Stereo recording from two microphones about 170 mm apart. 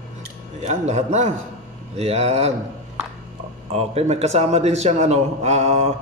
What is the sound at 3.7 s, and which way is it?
A man's voice, 40° right (ahead or behind).